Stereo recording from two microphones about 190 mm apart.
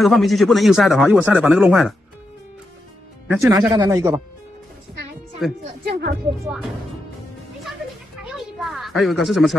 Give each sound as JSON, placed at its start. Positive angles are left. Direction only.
{"t": 0.0, "sound": "speech", "side_deg": 0}
{"t": 3.3, "sound": "speech", "side_deg": -15}
{"t": 5.9, "sound": "speech", "side_deg": -55}
{"t": 8.2, "sound": "a sound", "side_deg": 0}